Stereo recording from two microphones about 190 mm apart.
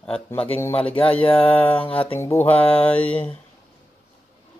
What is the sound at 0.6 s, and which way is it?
Mantra, 10° left (ahead or behind).